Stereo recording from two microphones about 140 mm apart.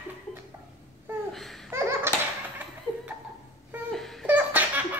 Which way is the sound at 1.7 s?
15° right (ahead or behind).